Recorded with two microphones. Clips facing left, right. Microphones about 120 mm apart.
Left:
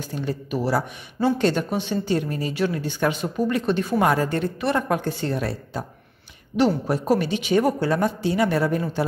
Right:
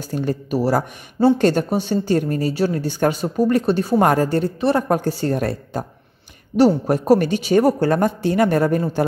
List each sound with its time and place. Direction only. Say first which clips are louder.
0.1 s speech: right 6 dB; 45° right (ahead or behind)